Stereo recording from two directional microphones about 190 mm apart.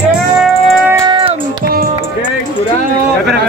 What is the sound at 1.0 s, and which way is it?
Music, 30° right (ahead or behind).